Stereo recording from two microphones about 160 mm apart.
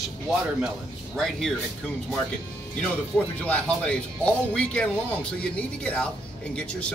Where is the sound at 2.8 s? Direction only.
5° left (ahead or behind).